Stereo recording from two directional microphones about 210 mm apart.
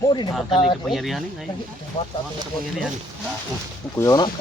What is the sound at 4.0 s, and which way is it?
Speech, 15° left (ahead or behind).